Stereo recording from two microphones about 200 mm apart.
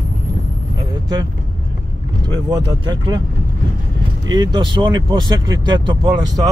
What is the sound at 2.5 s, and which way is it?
Speech, 20° right (ahead or behind).